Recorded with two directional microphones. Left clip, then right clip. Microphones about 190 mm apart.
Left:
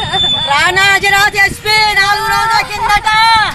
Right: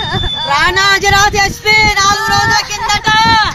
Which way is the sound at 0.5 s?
25° right (ahead or behind).